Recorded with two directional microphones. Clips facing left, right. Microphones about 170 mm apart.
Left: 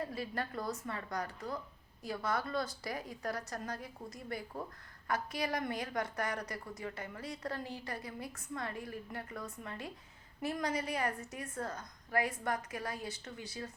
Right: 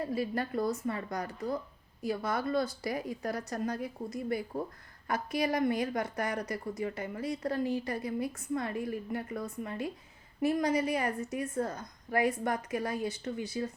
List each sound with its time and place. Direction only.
0.1 s a woman's voice: 10° right (ahead or behind)